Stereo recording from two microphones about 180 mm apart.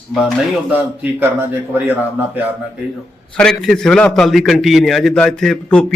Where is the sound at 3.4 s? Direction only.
5° left (ahead or behind).